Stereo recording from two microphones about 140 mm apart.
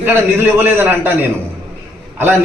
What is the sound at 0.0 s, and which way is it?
A man's voice, 15° right (ahead or behind).